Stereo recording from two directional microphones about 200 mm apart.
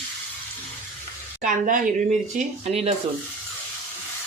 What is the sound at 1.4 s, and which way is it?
Speech, 40° right (ahead or behind).